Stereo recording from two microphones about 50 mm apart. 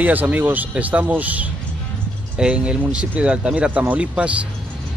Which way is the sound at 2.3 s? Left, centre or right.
Right.